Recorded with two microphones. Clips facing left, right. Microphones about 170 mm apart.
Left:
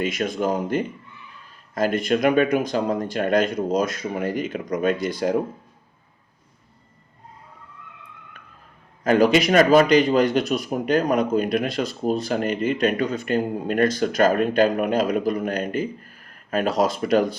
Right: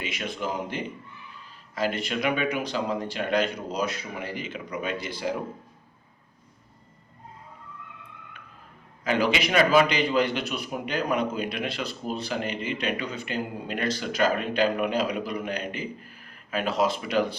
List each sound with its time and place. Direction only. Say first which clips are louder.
0.0 s speech: left 8 dB; 45° left (ahead or behind)
9.0 s speech: left 8 dB; 45° left (ahead or behind)